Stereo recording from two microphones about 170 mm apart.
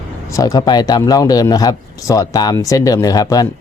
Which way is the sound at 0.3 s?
20° left (ahead or behind).